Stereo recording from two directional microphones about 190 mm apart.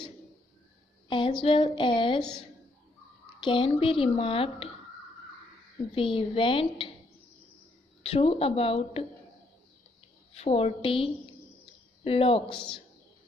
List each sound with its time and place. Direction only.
1.0 s a woman's voice: 25° left (ahead or behind)
3.3 s a woman's voice: 25° left (ahead or behind)
5.9 s a woman's voice: 30° left (ahead or behind)
8.0 s a woman's voice: 30° left (ahead or behind)
10.3 s a woman's voice: 30° left (ahead or behind)